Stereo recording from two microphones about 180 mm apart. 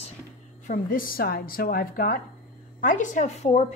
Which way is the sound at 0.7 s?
50° left (ahead or behind).